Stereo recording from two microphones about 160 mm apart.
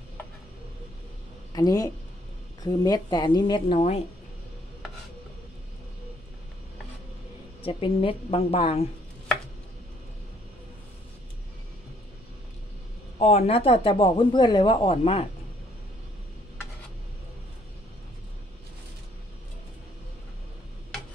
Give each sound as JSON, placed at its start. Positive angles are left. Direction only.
{"t": 1.5, "sound": "a woman's voice", "side_deg": 25}
{"t": 7.6, "sound": "speech", "side_deg": 35}
{"t": 13.2, "sound": "speech", "side_deg": 40}